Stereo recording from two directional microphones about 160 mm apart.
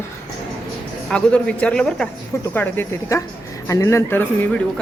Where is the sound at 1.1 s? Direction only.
5° left (ahead or behind).